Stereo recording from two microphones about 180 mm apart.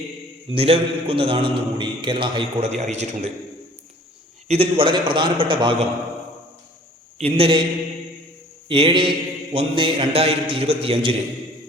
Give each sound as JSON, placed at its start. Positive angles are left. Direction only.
{"t": 0.5, "sound": "a man's voice", "side_deg": -30}
{"t": 2.9, "sound": "mantra", "side_deg": -40}
{"t": 4.4, "sound": "a man's voice", "side_deg": -30}
{"t": 7.2, "sound": "mantra", "side_deg": -35}
{"t": 8.6, "sound": "mantra", "side_deg": -30}